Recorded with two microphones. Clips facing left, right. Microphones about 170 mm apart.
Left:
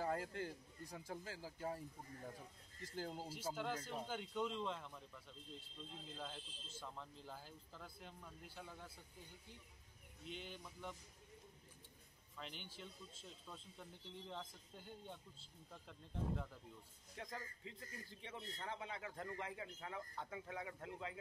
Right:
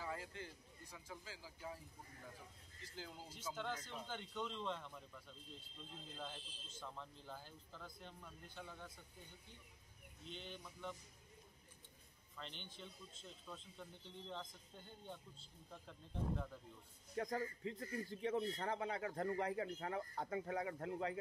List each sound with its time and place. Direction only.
0.0 s speech: 50° left (ahead or behind)
2.8 s speech: 45° left (ahead or behind)
3.5 s speech: 5° left (ahead or behind)
10.2 s speech: 5° left (ahead or behind)
12.4 s speech: 5° left (ahead or behind)
17.2 s speech: 45° right (ahead or behind)